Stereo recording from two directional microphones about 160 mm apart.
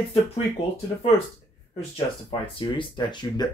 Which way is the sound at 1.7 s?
35° left (ahead or behind).